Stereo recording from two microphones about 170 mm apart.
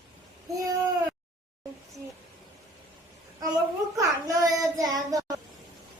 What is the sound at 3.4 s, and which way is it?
Child singing, 20° right (ahead or behind).